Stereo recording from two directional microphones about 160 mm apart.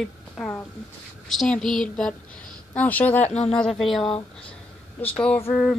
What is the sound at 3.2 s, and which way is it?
Speech, 45° left (ahead or behind).